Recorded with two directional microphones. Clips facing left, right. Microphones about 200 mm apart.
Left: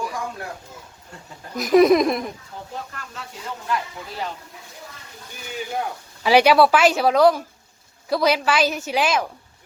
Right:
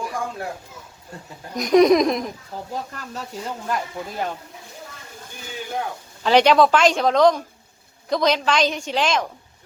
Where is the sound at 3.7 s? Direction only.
50° right (ahead or behind).